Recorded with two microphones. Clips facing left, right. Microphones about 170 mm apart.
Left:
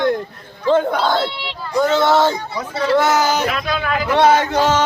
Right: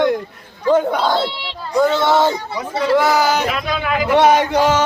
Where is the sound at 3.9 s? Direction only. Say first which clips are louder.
Right 1 dB; 15° right (ahead or behind).